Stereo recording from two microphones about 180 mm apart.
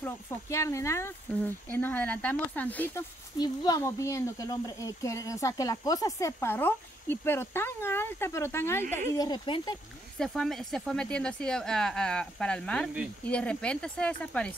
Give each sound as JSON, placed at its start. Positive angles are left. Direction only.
{"t": 0.0, "sound": "speech", "side_deg": 15}
{"t": 10.1, "sound": "speech", "side_deg": 5}